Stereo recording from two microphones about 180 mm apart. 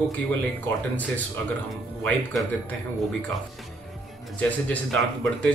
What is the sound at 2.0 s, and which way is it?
Speech, 5° left (ahead or behind).